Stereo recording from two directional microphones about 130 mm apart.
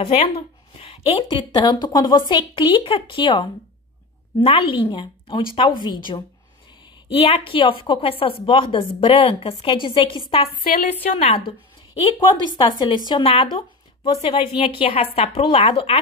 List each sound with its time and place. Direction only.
0.0 s a woman's voice: 50° left (ahead or behind); by 6.2 s 35° left (ahead or behind)
7.1 s a woman's voice: 45° left (ahead or behind)
11.0 s a woman's voice: 50° left (ahead or behind)
13.2 s a woman's voice: 45° left (ahead or behind)